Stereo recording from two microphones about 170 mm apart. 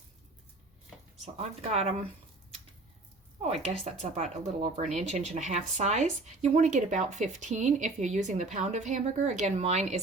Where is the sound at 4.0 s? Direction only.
45° right (ahead or behind).